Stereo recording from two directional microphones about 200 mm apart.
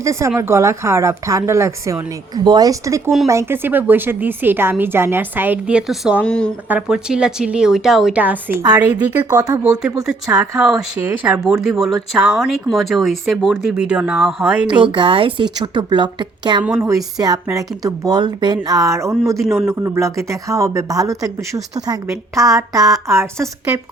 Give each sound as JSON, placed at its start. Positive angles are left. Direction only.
{"t": 0.0, "sound": "a woman's voice", "side_deg": -15}
{"t": 10.6, "sound": "speech", "side_deg": 0}
{"t": 14.7, "sound": "a woman's voice", "side_deg": -25}